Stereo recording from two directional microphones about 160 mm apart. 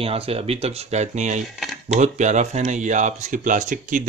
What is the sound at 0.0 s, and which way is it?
Speech, 35° right (ahead or behind).